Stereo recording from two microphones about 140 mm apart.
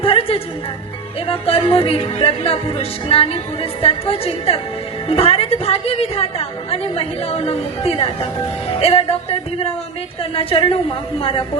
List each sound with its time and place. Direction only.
0.0 s music: 40° left (ahead or behind)
10.3 s music: 40° left (ahead or behind)
11.2 s speech: 40° left (ahead or behind)